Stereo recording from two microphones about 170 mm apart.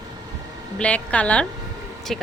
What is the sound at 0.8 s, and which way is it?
A woman's voice, 5° left (ahead or behind).